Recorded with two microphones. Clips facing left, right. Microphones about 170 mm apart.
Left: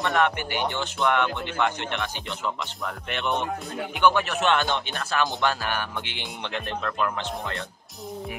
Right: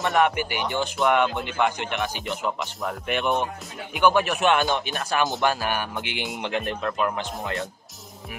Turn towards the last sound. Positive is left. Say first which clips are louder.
# right 2 dB
turn(degrees=-15)  # may be behind; listen again after turning